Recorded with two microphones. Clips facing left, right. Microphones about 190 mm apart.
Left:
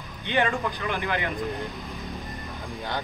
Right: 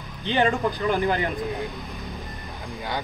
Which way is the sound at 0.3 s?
30° right (ahead or behind).